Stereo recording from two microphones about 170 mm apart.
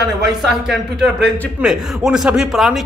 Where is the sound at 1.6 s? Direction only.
5° right (ahead or behind).